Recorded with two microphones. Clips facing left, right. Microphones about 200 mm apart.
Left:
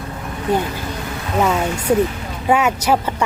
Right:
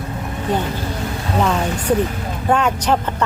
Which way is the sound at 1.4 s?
5° left (ahead or behind).